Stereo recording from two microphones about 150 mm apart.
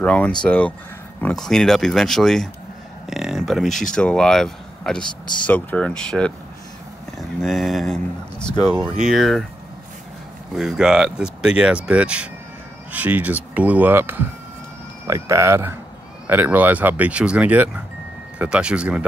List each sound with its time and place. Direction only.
0.0 s speech: 10° left (ahead or behind)
10.5 s speech: 5° right (ahead or behind)